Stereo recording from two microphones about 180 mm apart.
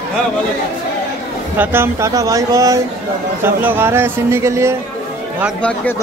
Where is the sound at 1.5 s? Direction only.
15° right (ahead or behind).